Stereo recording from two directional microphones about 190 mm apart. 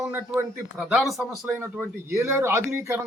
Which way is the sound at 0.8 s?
Centre (ahead or behind).